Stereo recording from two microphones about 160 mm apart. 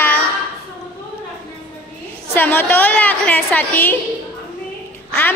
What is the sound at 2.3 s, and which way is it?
A woman's voice, 10° left (ahead or behind).